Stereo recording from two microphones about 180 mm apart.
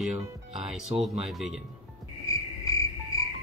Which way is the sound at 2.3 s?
20° left (ahead or behind).